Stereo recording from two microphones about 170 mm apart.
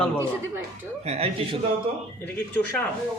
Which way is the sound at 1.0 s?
40° right (ahead or behind).